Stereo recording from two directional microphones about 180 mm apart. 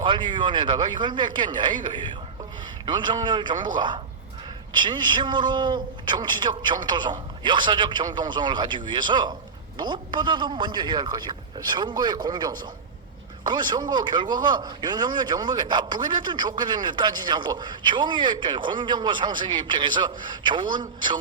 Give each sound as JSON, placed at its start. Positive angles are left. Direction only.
{"t": 0.0, "sound": "a man's voice", "side_deg": -25}